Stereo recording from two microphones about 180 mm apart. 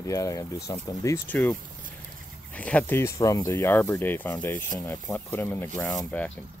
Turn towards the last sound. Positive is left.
turn(degrees=10)  # may be behind; listen again after turning